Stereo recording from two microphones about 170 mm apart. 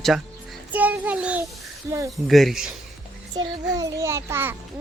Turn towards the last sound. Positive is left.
turn(degrees=-15)  # may be behind; listen again after turning